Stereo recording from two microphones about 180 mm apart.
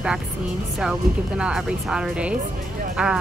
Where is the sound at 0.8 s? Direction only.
5° right (ahead or behind).